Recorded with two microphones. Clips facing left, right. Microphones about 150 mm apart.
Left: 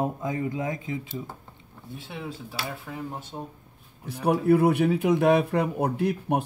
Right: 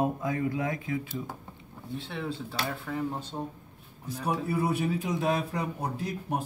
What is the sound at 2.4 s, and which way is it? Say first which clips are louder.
Speech: right 1 dB; 5° left (ahead or behind).